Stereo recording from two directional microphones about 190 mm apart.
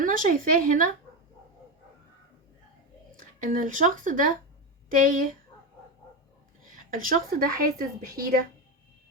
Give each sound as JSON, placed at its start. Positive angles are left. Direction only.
{"t": 0.0, "sound": "a woman's voice", "side_deg": -45}
{"t": 3.2, "sound": "a woman's voice", "side_deg": -45}
{"t": 6.7, "sound": "a woman's voice", "side_deg": -45}